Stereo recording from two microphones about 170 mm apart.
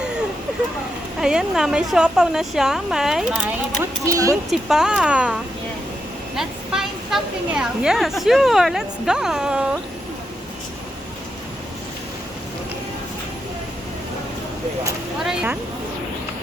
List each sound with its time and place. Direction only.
1.2 s a woman's voice: 5° right (ahead or behind)
4.0 s speech: 20° right (ahead or behind)
4.5 s a woman's voice: 5° right (ahead or behind)
15.2 s a woman's voice: 5° right (ahead or behind)